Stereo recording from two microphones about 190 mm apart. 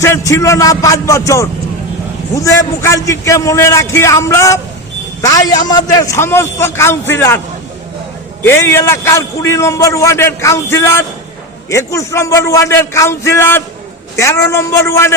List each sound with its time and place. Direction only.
0.0 s a man's voice: 15° left (ahead or behind)
8.4 s a man's voice: 10° left (ahead or behind)